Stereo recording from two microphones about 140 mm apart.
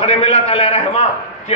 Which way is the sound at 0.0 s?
50° left (ahead or behind).